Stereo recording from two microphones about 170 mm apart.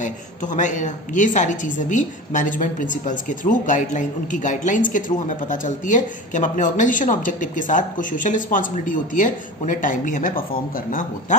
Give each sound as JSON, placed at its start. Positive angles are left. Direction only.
{"t": 0.0, "sound": "speech", "side_deg": 45}